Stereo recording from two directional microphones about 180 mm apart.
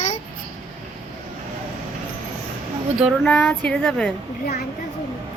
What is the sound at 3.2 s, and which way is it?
Speech, 5° left (ahead or behind).